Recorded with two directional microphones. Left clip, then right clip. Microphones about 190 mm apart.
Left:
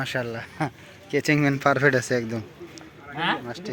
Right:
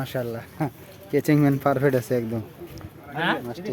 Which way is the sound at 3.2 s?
30° right (ahead or behind).